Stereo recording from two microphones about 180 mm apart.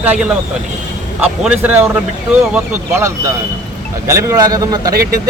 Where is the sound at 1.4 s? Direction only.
10° right (ahead or behind).